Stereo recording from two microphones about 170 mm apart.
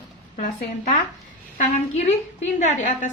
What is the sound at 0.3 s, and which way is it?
A woman's voice, 50° left (ahead or behind).